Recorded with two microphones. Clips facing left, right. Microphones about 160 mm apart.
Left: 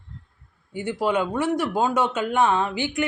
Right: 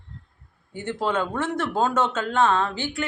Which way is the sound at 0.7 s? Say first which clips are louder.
Left 2 dB; 10° left (ahead or behind).